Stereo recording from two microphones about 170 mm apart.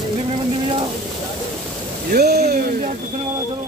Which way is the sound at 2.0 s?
70° right (ahead or behind).